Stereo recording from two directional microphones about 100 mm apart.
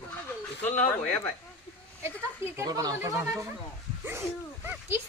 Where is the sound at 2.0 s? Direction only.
30° right (ahead or behind).